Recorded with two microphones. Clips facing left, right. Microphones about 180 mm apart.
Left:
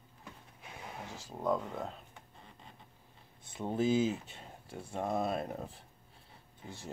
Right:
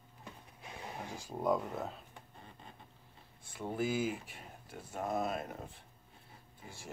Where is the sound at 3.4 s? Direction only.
20° left (ahead or behind).